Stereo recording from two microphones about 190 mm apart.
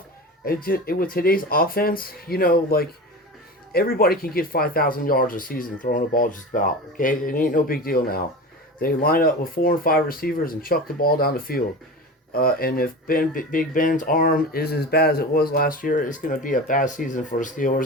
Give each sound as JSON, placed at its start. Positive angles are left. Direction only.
{"t": 0.4, "sound": "speech", "side_deg": 50}